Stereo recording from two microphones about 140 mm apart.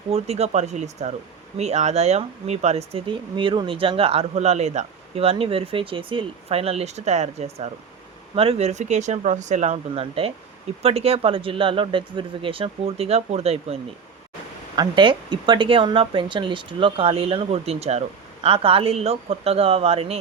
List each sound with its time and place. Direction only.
0.1 s speech: 50° right (ahead or behind)
14.8 s speech: 35° right (ahead or behind)